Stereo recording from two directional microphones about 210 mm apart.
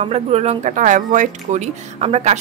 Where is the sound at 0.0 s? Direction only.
30° right (ahead or behind).